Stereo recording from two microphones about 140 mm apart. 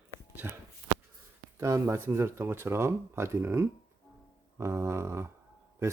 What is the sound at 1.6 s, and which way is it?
Speech, 20° right (ahead or behind).